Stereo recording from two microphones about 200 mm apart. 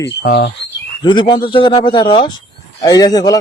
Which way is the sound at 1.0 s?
25° left (ahead or behind).